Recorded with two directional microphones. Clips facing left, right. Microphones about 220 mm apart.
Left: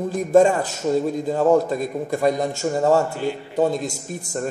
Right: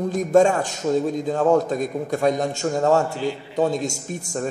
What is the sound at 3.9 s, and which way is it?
Speech, 20° left (ahead or behind).